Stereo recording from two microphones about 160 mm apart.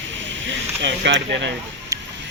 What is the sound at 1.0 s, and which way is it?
Speech, 90° right.